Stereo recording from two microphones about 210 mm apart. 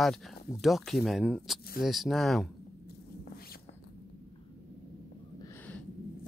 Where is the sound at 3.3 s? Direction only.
45° left (ahead or behind).